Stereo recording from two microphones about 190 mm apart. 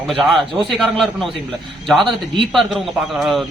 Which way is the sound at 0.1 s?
Centre (ahead or behind).